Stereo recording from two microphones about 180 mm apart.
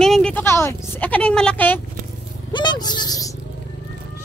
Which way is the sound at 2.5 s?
25° left (ahead or behind).